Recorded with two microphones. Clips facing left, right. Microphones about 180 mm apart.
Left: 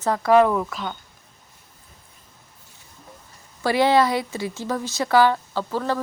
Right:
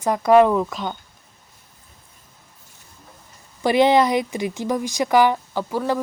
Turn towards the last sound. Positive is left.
turn(degrees=-15)  # may be behind; listen again after turning